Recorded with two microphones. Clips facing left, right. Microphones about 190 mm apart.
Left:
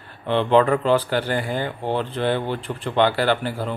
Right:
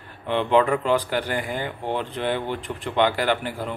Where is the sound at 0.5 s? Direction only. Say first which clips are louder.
Left 2 dB; 15° right (ahead or behind).